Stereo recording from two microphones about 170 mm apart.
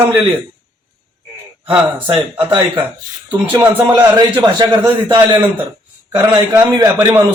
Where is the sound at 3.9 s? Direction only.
25° right (ahead or behind).